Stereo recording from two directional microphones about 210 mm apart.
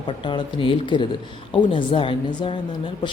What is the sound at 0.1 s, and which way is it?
A woman's voice, 20° left (ahead or behind).